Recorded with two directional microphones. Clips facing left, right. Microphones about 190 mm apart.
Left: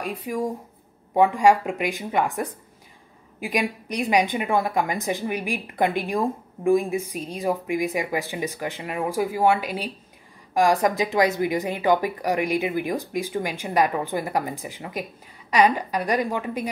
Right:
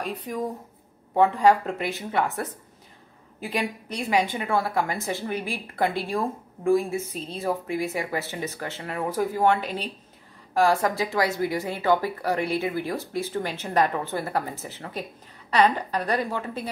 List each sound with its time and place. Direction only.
0.0 s a woman's voice: 10° left (ahead or behind)